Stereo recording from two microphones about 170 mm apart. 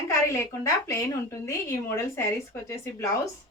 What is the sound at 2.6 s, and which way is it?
Speech, 15° left (ahead or behind).